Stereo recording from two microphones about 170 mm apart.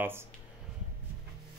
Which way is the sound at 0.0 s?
15° right (ahead or behind).